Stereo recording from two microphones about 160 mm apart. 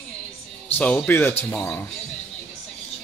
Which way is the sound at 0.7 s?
10° left (ahead or behind).